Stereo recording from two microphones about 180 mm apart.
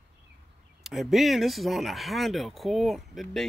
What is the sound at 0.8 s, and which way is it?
Speech, centre (ahead or behind).